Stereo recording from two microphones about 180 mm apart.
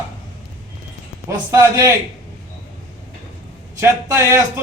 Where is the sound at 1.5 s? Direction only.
15° right (ahead or behind).